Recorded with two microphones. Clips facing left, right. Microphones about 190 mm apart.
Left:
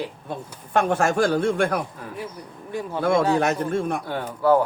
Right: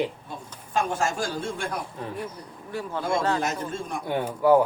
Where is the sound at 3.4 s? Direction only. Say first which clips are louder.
Left 7 dB; 65° left (ahead or behind).